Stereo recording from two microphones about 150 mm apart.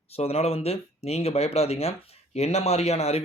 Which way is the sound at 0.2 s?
45° left (ahead or behind).